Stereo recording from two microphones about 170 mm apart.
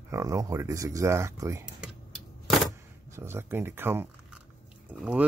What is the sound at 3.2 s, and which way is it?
Speech, 15° right (ahead or behind).